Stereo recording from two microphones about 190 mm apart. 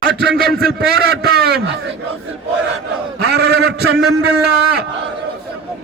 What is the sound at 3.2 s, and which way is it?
Speech, 60° right (ahead or behind).